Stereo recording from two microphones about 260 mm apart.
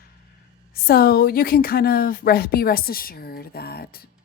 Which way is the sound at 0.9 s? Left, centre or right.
Left.